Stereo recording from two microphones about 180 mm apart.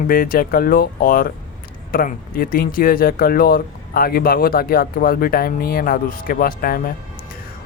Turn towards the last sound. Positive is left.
turn(degrees=55)  # may be behind; listen again after turning